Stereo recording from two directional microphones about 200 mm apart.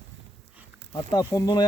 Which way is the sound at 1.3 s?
20° left (ahead or behind).